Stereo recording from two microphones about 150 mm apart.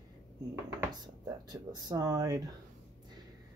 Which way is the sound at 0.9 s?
30° right (ahead or behind).